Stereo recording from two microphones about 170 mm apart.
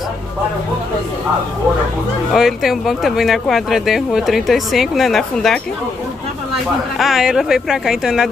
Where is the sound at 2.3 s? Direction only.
Centre (ahead or behind).